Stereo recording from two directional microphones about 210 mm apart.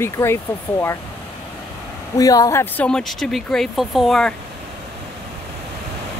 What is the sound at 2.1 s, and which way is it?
Speech, 15° left (ahead or behind).